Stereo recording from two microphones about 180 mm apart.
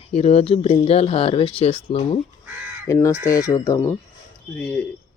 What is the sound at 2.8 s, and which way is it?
Speech, 15° left (ahead or behind).